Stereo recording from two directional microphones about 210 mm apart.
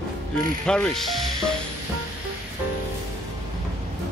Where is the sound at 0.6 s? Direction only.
5° left (ahead or behind).